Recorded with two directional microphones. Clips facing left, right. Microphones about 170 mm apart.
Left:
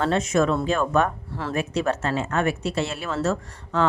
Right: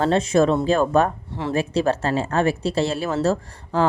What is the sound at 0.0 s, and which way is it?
Speech, 30° right (ahead or behind).